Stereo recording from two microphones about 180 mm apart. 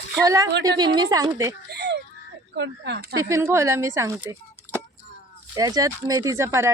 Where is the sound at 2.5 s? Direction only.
70° right (ahead or behind).